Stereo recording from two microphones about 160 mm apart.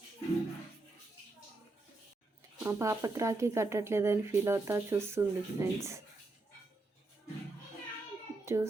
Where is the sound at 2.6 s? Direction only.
20° right (ahead or behind).